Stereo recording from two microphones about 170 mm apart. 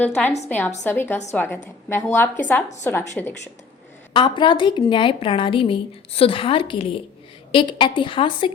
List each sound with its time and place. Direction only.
0.0 s a woman's voice: 10° left (ahead or behind)
4.1 s a woman's voice: 30° left (ahead or behind)